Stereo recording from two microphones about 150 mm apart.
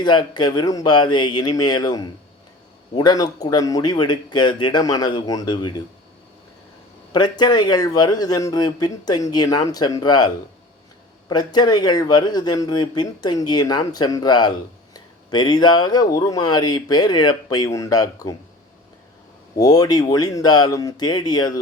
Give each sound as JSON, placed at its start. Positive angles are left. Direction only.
{"t": 0.0, "sound": "speech", "side_deg": 30}
{"t": 7.1, "sound": "speech", "side_deg": 30}
{"t": 19.5, "sound": "speech", "side_deg": 25}